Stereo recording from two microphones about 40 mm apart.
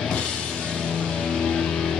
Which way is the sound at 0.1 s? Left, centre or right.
Centre.